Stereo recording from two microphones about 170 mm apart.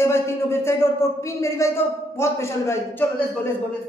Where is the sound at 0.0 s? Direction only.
15° left (ahead or behind).